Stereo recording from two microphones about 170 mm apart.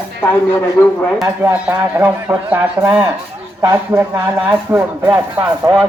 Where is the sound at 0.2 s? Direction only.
10° left (ahead or behind).